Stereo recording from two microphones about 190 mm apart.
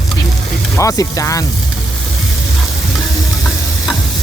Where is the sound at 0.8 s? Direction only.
15° left (ahead or behind).